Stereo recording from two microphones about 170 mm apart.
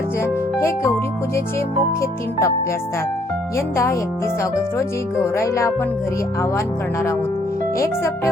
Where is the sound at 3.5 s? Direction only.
15° left (ahead or behind).